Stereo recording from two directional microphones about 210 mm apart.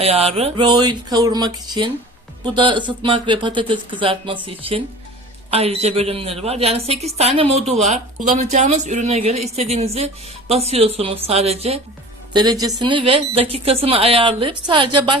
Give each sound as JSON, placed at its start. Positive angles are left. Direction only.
{"t": 0.0, "sound": "a woman's voice", "side_deg": -30}